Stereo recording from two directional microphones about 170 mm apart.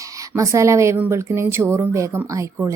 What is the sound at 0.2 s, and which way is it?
Speech, 15° right (ahead or behind).